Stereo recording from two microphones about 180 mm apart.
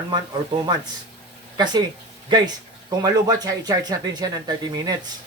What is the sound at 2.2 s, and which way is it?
Speech, 25° right (ahead or behind).